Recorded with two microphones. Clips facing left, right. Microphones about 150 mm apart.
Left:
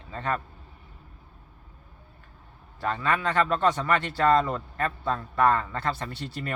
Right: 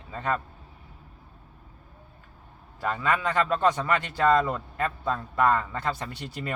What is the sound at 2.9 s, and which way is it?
A man's voice, 15° right (ahead or behind).